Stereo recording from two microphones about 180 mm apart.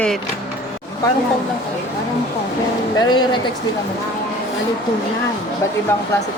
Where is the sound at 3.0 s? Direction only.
25° left (ahead or behind).